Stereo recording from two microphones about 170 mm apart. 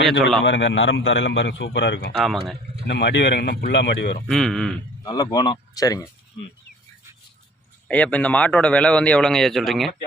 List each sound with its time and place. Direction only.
0.0 s speech: centre (ahead or behind)
0.4 s a man's voice: 90° left
2.1 s speech: centre (ahead or behind)
2.8 s a man's voice: 90° left
4.3 s speech: 5° left (ahead or behind)
5.0 s speech: 25° left (ahead or behind)
7.9 s a man's voice: 10° left (ahead or behind)